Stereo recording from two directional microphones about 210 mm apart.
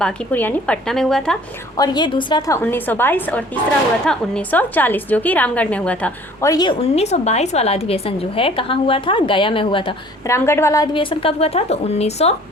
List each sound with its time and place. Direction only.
0.0 s a woman's voice: 10° left (ahead or behind)
1.7 s a woman's voice: 20° left (ahead or behind)
10.3 s a woman's voice: 10° left (ahead or behind); by 12.3 s 30° left (ahead or behind)